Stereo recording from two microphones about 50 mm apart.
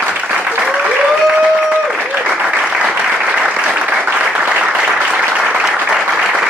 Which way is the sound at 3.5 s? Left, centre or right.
Right.